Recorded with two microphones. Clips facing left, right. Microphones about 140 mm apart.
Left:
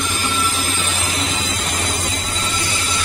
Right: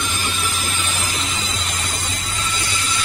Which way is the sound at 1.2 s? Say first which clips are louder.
Left 4 dB; 60° left (ahead or behind).